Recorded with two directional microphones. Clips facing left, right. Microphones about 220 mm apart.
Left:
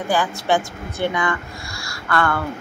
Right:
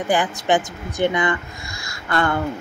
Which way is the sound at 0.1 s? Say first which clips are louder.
Right 1 dB; 20° right (ahead or behind).